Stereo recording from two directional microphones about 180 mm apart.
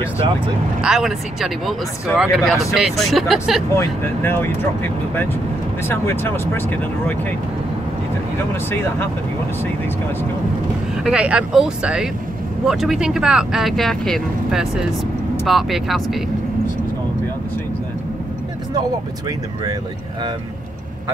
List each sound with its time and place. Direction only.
0.7 s speech: 5° right (ahead or behind)
3.7 s speech: 15° left (ahead or behind)
8.6 s speech: 15° left (ahead or behind)
11.0 s speech: 5° right (ahead or behind)